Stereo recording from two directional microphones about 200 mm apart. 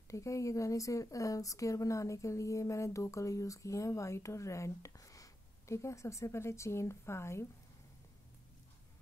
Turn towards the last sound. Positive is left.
turn(degrees=15)  # may be behind; listen again after turning